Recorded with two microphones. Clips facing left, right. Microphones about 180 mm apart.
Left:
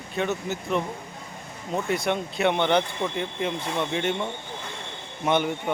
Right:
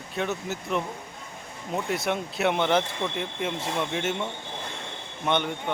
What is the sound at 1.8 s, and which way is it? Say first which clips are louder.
Speech: left 3 dB; centre (ahead or behind).